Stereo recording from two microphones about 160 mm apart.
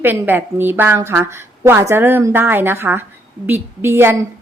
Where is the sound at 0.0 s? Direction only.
10° right (ahead or behind).